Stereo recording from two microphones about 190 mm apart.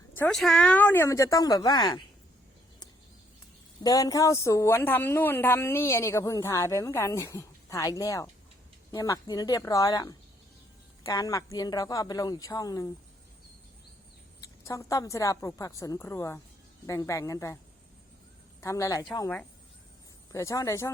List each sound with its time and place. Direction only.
0.2 s a woman's voice: centre (ahead or behind); by 2.0 s 20° left (ahead or behind)
3.8 s a woman's voice: 20° left (ahead or behind)
14.4 s a woman's voice: 15° left (ahead or behind)
18.6 s a woman's voice: 15° left (ahead or behind)